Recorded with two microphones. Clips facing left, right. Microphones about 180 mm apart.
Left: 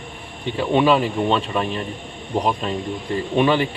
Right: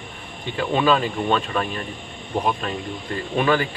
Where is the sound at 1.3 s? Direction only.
25° left (ahead or behind).